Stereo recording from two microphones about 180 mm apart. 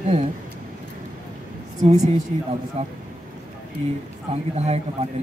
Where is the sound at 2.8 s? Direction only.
35° right (ahead or behind).